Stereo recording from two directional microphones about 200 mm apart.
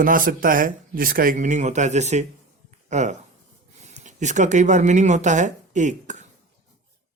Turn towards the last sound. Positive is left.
turn(degrees=-35)  # may be behind; listen again after turning